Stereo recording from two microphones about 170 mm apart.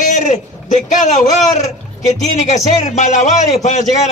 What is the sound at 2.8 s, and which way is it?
Speech, 45° left (ahead or behind).